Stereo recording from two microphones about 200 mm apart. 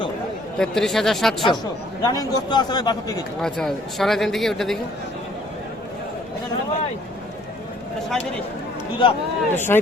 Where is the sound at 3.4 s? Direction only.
Centre (ahead or behind).